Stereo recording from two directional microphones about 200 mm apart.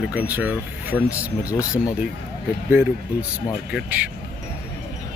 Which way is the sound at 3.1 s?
5° right (ahead or behind).